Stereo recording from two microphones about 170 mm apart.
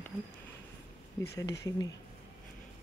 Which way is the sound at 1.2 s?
70° left (ahead or behind).